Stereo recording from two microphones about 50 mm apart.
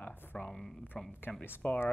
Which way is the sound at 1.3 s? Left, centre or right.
Left.